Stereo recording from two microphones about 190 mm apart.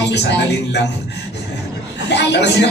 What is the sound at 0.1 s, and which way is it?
Speech, 65° left (ahead or behind).